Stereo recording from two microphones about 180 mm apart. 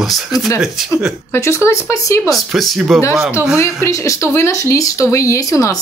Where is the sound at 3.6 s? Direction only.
15° left (ahead or behind).